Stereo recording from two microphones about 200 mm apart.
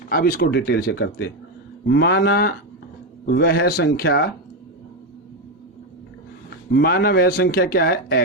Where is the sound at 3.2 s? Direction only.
55° left (ahead or behind).